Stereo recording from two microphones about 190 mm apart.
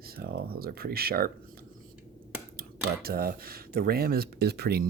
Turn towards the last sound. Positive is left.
turn(degrees=-55)  # may be behind; listen again after turning